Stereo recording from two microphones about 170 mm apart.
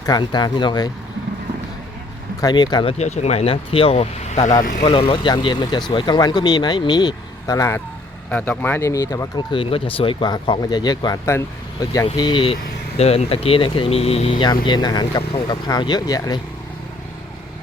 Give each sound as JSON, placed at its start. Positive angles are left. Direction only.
{"t": 0.0, "sound": "speech", "side_deg": 25}
{"t": 2.4, "sound": "speech", "side_deg": 25}
{"t": 3.0, "sound": "speech", "side_deg": 40}
{"t": 4.8, "sound": "speech", "side_deg": 30}